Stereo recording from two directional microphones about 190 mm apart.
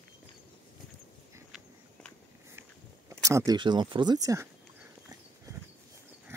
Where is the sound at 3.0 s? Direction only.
15° right (ahead or behind).